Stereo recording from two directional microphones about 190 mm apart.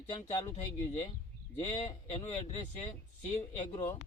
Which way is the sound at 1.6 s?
35° left (ahead or behind).